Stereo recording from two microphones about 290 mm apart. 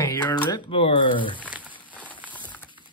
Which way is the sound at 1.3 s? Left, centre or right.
Centre.